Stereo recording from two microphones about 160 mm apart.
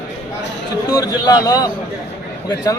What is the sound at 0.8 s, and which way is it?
Speech, 25° left (ahead or behind).